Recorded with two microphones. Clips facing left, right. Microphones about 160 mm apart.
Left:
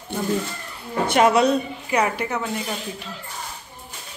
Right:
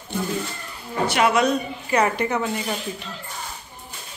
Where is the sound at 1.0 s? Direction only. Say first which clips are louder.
Left 3 dB; 50° left (ahead or behind).